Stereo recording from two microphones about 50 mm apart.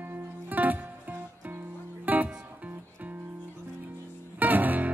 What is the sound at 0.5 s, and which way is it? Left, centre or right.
Music, right.